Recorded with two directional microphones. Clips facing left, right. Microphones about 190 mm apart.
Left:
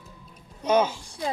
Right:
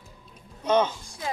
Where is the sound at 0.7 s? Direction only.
10° left (ahead or behind).